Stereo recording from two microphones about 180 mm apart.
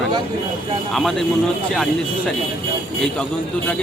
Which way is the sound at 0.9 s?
Centre (ahead or behind).